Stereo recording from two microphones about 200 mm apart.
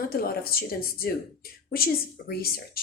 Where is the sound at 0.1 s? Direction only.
50° left (ahead or behind).